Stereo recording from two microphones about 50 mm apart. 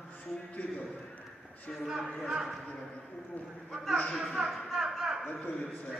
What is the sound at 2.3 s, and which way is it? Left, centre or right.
Speech, centre.